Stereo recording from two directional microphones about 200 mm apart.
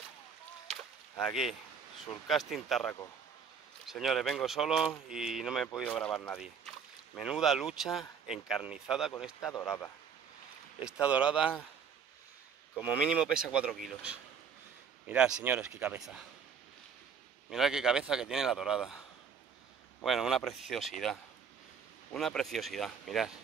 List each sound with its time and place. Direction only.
0.7 s a sound: 5° left (ahead or behind)
2.2 s speech: centre (ahead or behind)
9.4 s speech: 15° left (ahead or behind)
10.8 s speech: 5° right (ahead or behind)
12.7 s speech: 5° right (ahead or behind)
17.5 s speech: centre (ahead or behind)